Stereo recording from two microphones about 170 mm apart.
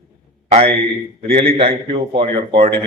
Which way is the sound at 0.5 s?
35° right (ahead or behind).